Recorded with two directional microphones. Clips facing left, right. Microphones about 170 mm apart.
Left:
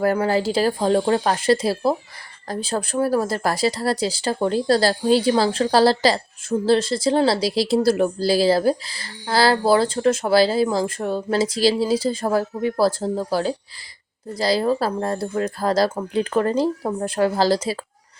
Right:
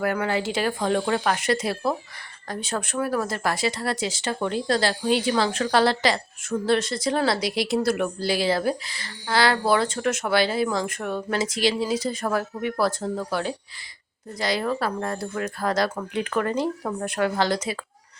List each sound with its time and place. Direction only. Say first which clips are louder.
0.0 s speech: left 5 dB; 35° left (ahead or behind)